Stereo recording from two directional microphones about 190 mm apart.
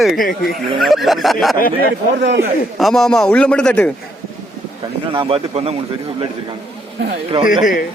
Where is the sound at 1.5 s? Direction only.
50° left (ahead or behind).